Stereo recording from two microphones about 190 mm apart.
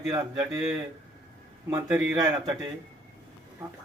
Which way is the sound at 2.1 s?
20° right (ahead or behind).